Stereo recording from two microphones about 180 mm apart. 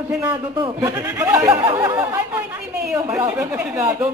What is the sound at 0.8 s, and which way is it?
Speech, 15° right (ahead or behind).